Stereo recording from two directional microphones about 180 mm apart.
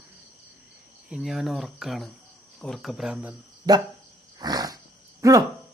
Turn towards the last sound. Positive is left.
turn(degrees=-20)  # may be behind; listen again after turning